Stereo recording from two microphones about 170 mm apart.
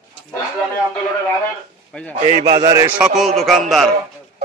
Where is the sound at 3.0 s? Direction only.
Centre (ahead or behind).